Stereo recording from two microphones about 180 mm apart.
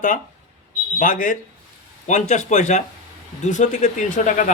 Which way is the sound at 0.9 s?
45° left (ahead or behind).